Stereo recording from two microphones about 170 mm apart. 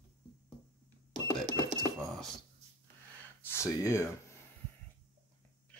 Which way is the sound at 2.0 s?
Centre (ahead or behind).